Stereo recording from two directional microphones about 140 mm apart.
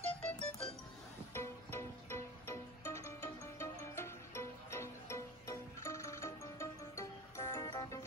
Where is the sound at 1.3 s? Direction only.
20° left (ahead or behind).